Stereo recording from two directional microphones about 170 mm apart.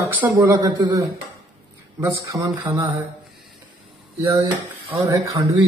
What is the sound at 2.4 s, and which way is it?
Dishes, 20° right (ahead or behind).